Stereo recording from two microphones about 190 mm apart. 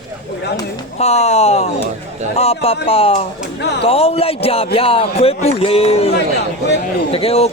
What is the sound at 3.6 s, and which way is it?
Speech, 60° left (ahead or behind).